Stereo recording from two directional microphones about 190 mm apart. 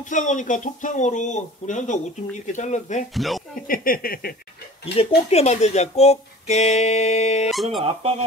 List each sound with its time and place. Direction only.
0.1 s speech: 40° left (ahead or behind)
3.2 s speech: centre (ahead or behind)
3.6 s a sound: 50° left (ahead or behind)
4.9 s speech: 35° left (ahead or behind)
7.5 s speech: centre (ahead or behind)
7.8 s speech: 30° right (ahead or behind)